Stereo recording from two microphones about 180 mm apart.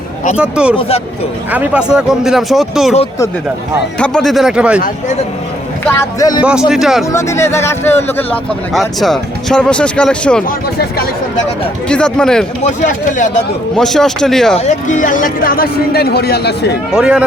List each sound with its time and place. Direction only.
0.3 s speech: 5° right (ahead or behind)
0.8 s speech: 35° left (ahead or behind)
1.5 s speech: 5° right (ahead or behind)
3.9 s speech: 5° left (ahead or behind)
6.0 s speech: 20° left (ahead or behind)
6.7 s speech: centre (ahead or behind)
7.1 s speech: 15° left (ahead or behind)
8.7 s speech: centre (ahead or behind)
10.8 s speech: 60° left (ahead or behind)
11.9 s speech: 5° left (ahead or behind)
12.6 s speech: 45° left (ahead or behind)
13.7 s speech: centre (ahead or behind)
14.6 s speech: 40° left (ahead or behind); by 16.7 s 65° left (ahead or behind)
16.9 s speech: 5° right (ahead or behind)